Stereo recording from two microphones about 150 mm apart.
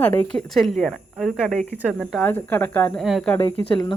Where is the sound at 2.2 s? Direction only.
10° left (ahead or behind).